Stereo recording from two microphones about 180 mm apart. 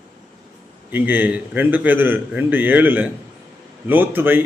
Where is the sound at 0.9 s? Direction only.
10° right (ahead or behind).